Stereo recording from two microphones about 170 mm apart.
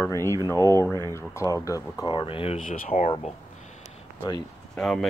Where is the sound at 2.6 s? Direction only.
45° left (ahead or behind).